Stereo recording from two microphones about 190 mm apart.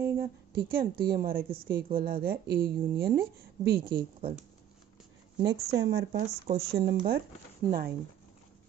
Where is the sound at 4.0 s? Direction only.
30° right (ahead or behind).